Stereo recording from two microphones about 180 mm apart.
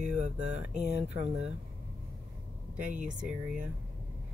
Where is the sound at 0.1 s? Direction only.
40° right (ahead or behind).